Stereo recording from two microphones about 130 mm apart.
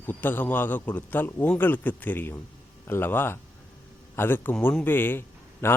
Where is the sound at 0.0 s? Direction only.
15° left (ahead or behind).